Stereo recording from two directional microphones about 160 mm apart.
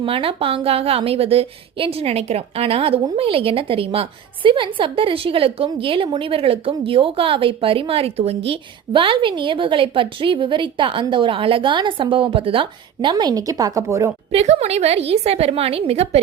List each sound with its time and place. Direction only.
0.0 s a woman's voice: 35° right (ahead or behind); by 14.1 s 20° right (ahead or behind)
14.3 s a woman's voice: 40° right (ahead or behind)